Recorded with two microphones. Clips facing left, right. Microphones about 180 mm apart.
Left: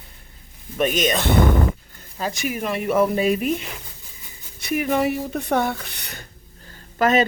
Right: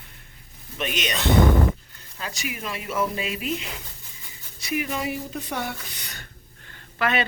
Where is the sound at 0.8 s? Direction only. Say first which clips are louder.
Left 8 dB; 45° left (ahead or behind).